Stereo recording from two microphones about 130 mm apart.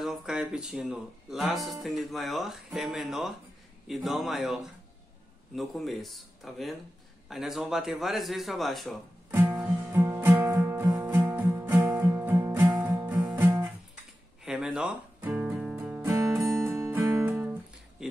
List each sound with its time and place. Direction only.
0.0 s speech: centre (ahead or behind)
9.3 s music: 20° right (ahead or behind)
13.4 s guitar: 15° right (ahead or behind)